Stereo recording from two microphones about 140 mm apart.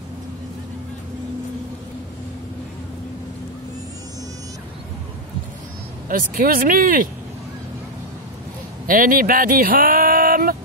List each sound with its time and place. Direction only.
6.0 s speech: 85° right
8.8 s speech: 85° right